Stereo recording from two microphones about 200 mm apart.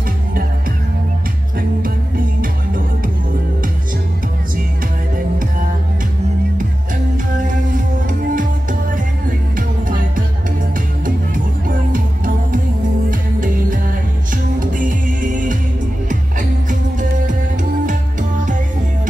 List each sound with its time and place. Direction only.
1.8 s music: 45° right (ahead or behind)
7.3 s music: 40° right (ahead or behind)
9.6 s music: 40° right (ahead or behind)
14.3 s music: 40° right (ahead or behind)